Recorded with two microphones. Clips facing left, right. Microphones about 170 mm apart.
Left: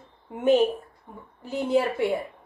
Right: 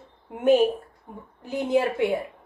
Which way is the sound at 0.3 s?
10° right (ahead or behind).